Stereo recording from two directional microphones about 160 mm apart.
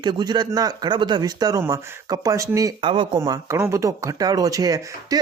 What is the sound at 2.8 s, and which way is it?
Speech, 30° right (ahead or behind).